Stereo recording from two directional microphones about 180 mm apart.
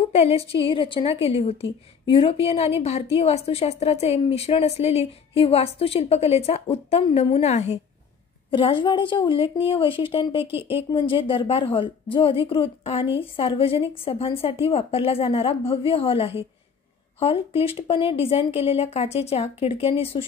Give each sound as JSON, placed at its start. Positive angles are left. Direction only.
{"t": 0.1, "sound": "a woman's voice", "side_deg": 35}